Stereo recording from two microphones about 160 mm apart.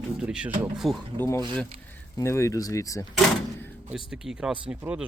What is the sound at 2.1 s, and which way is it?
Speech, 20° left (ahead or behind).